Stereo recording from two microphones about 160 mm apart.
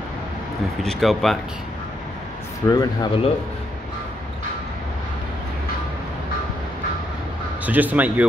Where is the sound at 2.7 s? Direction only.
25° left (ahead or behind).